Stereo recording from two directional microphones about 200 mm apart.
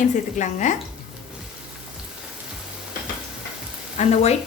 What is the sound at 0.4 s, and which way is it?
Speech, 35° left (ahead or behind).